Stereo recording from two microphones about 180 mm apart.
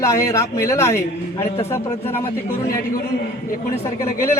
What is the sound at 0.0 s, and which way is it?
Speech, 15° left (ahead or behind).